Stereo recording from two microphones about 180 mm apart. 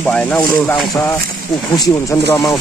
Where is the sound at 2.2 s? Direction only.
15° left (ahead or behind).